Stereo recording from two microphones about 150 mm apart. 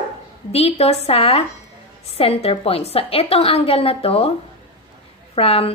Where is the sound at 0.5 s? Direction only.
45° left (ahead or behind).